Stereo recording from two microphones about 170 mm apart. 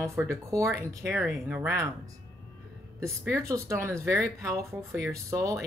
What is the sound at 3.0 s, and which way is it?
Speech, 15° right (ahead or behind).